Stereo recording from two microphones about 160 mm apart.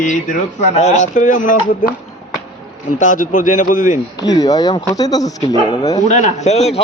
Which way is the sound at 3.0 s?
55° left (ahead or behind).